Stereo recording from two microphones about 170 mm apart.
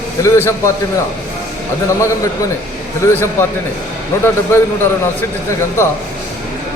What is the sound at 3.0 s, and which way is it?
Speech, 15° left (ahead or behind).